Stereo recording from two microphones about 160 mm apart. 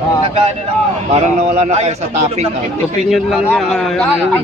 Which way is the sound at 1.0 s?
45° right (ahead or behind).